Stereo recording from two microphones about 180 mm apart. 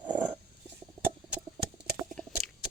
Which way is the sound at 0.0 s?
25° right (ahead or behind).